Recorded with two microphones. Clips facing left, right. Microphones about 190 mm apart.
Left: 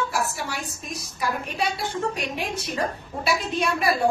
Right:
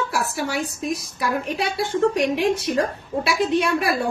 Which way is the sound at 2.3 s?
70° right (ahead or behind).